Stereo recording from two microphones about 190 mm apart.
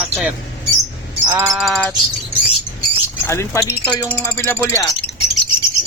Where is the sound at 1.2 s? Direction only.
15° right (ahead or behind).